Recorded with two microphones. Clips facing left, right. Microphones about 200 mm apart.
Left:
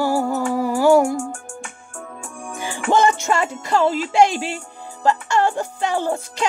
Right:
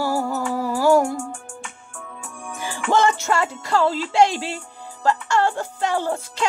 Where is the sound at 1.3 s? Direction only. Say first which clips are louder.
Left 2 dB; 45° left (ahead or behind).